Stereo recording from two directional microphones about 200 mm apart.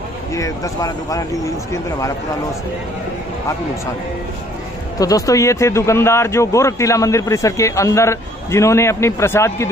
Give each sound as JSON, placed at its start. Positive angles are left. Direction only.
{"t": 0.3, "sound": "speech", "side_deg": 15}
{"t": 4.9, "sound": "speech", "side_deg": 15}